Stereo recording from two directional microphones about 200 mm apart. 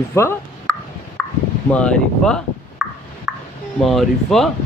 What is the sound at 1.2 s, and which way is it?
Chop, 5° left (ahead or behind).